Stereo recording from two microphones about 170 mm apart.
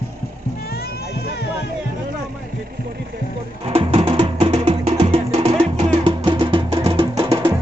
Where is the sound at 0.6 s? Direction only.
65° left (ahead or behind).